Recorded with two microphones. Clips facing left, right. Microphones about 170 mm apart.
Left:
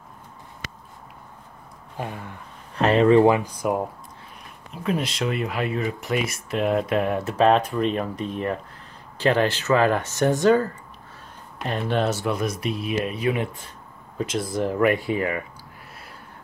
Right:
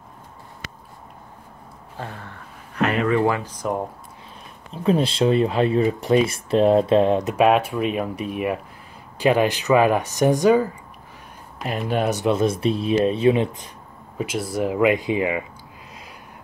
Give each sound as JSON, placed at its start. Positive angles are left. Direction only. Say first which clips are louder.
{"t": 2.0, "sound": "speech", "louder": "left 2 dB", "side_deg": 15}
{"t": 2.7, "sound": "speech", "louder": "left 4 dB", "side_deg": 30}
{"t": 4.8, "sound": "speech", "louder": "right 7 dB", "side_deg": -30}
{"t": 14.1, "sound": "speech", "louder": "right 1 dB", "side_deg": -10}